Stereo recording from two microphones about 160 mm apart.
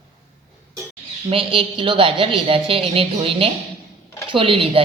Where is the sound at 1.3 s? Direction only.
35° right (ahead or behind).